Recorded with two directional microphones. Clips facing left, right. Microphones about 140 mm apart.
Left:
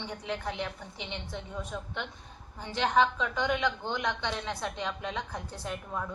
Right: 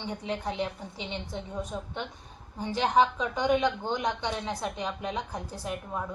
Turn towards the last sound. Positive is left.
turn(degrees=-15)  # may be behind; listen again after turning